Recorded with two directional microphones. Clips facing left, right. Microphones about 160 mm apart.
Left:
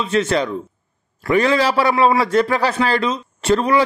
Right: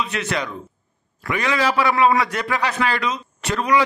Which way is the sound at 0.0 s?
30° left (ahead or behind).